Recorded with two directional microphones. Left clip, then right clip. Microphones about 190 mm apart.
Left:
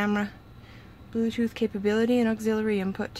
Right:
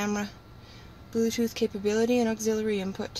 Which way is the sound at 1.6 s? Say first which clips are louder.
Left 1 dB; centre (ahead or behind).